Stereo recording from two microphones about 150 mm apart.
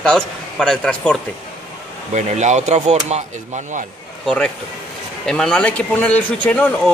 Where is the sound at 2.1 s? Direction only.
50° right (ahead or behind).